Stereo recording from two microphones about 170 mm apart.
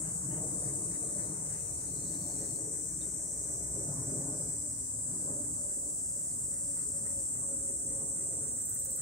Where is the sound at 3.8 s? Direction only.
30° left (ahead or behind).